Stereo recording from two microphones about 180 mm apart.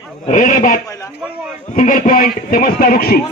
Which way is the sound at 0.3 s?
45° left (ahead or behind).